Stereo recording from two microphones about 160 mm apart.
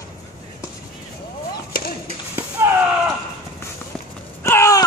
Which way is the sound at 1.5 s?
70° left (ahead or behind).